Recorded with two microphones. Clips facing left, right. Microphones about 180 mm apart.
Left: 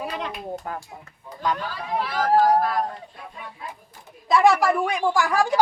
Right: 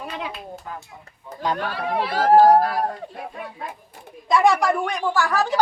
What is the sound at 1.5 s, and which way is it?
Speech, 65° right (ahead or behind).